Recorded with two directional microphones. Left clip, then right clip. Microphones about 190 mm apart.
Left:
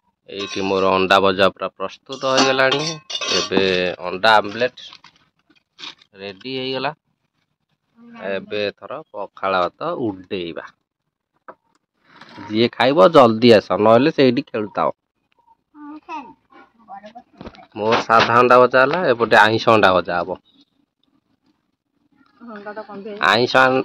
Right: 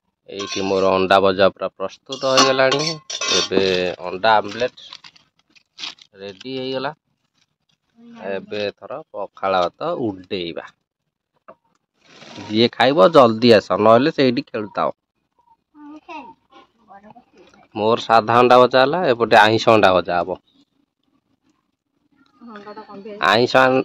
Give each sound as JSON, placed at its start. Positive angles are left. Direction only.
{"t": 0.3, "sound": "speech", "side_deg": -10}
{"t": 3.4, "sound": "speech", "side_deg": -5}
{"t": 4.9, "sound": "a sound", "side_deg": -25}
{"t": 6.4, "sound": "speech", "side_deg": 5}
{"t": 8.2, "sound": "speech", "side_deg": 0}
{"t": 12.4, "sound": "speech", "side_deg": -10}
{"t": 17.8, "sound": "speech", "side_deg": -25}
{"t": 23.1, "sound": "speech", "side_deg": -15}